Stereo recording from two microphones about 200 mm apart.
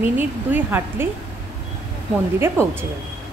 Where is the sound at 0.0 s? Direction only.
10° right (ahead or behind).